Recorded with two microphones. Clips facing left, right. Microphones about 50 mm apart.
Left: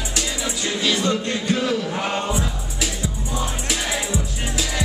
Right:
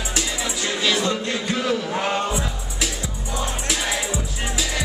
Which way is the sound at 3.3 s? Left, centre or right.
Centre.